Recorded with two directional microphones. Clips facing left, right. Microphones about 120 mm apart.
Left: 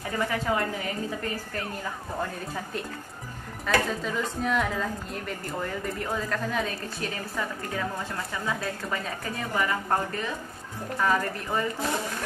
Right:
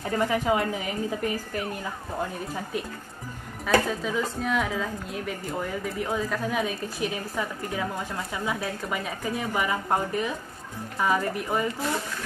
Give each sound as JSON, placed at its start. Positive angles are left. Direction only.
{"t": 0.2, "sound": "a woman's voice", "side_deg": -15}
{"t": 3.6, "sound": "a woman's voice", "side_deg": -5}